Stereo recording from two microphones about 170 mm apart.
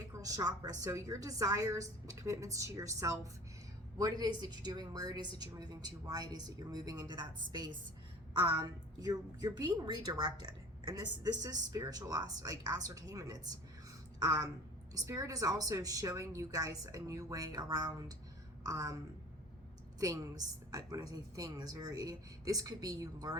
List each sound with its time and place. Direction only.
0.1 s a woman's voice: 20° right (ahead or behind)
20.0 s a woman's voice: 20° right (ahead or behind)